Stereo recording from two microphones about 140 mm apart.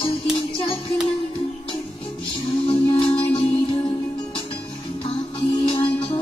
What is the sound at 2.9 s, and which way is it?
Music, 40° left (ahead or behind).